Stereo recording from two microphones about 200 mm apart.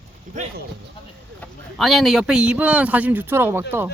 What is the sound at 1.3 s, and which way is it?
A man's voice, centre (ahead or behind).